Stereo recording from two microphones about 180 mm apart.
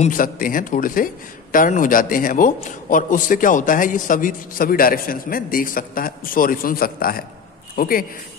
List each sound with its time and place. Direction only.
0.0 s a man's voice: 50° left (ahead or behind)